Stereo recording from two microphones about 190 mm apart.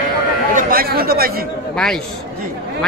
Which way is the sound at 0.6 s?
50° right (ahead or behind).